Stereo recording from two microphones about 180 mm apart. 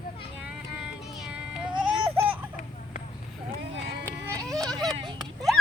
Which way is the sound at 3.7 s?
80° right.